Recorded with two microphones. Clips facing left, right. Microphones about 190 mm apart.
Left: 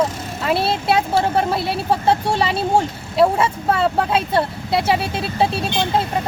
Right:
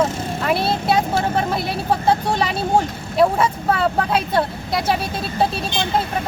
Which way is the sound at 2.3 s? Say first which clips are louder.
Left 1 dB; 30° left (ahead or behind).